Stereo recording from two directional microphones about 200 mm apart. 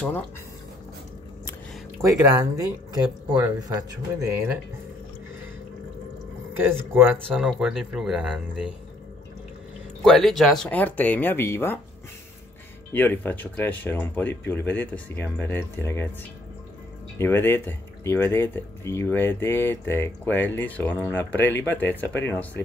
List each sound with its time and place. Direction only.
2.0 s speech: 15° right (ahead or behind)
6.9 s speech: 10° right (ahead or behind)
10.0 s speech: centre (ahead or behind)
12.9 s speech: 10° left (ahead or behind)
17.2 s speech: 10° left (ahead or behind)